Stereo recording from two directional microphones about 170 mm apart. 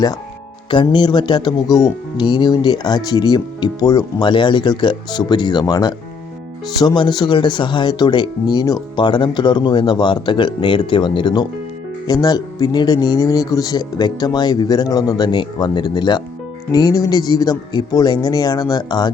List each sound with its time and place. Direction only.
0.7 s speech: 25° left (ahead or behind)